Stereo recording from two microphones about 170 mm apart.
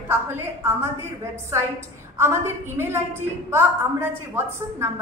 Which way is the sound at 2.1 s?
15° right (ahead or behind).